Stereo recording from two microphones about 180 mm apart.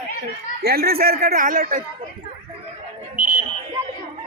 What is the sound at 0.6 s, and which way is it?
Speech, 60° right (ahead or behind).